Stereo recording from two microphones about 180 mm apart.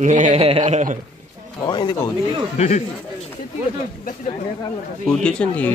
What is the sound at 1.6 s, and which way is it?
Speech, 25° left (ahead or behind).